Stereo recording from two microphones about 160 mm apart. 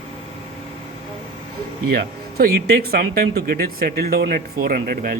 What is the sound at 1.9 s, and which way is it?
A man's voice, 75° right (ahead or behind).